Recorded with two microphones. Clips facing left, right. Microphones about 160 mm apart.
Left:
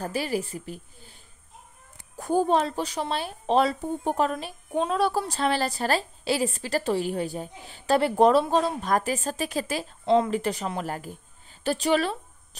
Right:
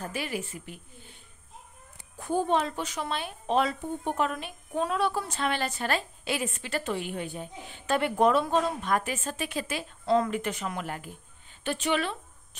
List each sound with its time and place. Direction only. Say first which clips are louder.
0.0 s a woman's voice: left 5 dB; 35° left (ahead or behind)
2.1 s a woman's voice: left 4 dB; 40° left (ahead or behind)
10.0 s a woman's voice: left 3 dB; 25° left (ahead or behind)